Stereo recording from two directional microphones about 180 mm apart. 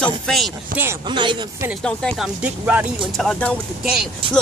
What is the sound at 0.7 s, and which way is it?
Speech, 50° right (ahead or behind).